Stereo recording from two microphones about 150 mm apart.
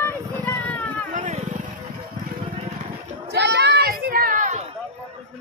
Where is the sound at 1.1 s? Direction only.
55° right (ahead or behind).